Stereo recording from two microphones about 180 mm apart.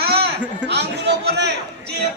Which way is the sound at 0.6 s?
70° right (ahead or behind).